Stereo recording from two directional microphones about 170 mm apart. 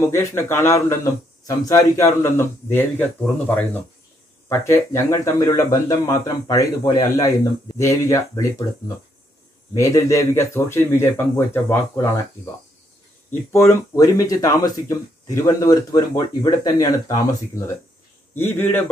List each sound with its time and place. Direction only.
0.1 s a man's voice: 15° left (ahead or behind)
13.3 s speech: 15° left (ahead or behind)
18.3 s a man's voice: 10° left (ahead or behind)